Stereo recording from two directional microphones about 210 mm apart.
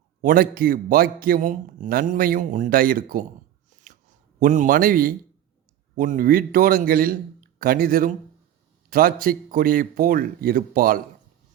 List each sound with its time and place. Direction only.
0.2 s a man's voice: 40° right (ahead or behind)
3.7 s a sound: 35° right (ahead or behind)
4.4 s a man's voice: 35° right (ahead or behind)